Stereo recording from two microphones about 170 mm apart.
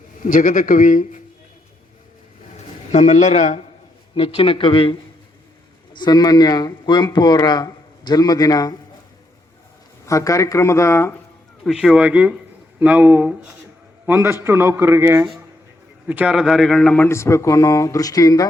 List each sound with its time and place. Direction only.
0.2 s speech: 50° left (ahead or behind)
2.9 s speech: 40° left (ahead or behind); by 8.7 s 20° left (ahead or behind)
10.1 s speech: 20° left (ahead or behind)
11.6 s speech: centre (ahead or behind); by 18.4 s 20° left (ahead or behind)